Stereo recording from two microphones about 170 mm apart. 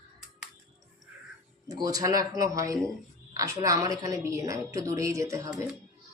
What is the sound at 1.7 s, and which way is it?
Speech, 20° right (ahead or behind).